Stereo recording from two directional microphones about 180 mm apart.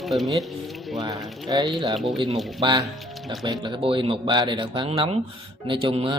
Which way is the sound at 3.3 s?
25° right (ahead or behind).